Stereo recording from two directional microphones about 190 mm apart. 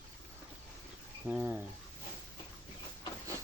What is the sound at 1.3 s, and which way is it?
Speech, 10° right (ahead or behind).